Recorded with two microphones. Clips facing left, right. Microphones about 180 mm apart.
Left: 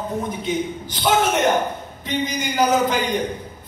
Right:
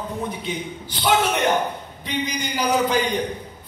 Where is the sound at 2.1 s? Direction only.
45° left (ahead or behind).